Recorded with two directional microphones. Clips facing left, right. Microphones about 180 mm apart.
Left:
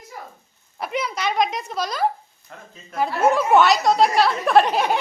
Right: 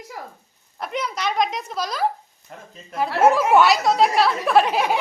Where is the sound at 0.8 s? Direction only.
5° left (ahead or behind).